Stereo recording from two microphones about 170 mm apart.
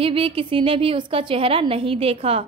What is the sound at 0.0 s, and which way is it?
A woman's voice, 30° right (ahead or behind).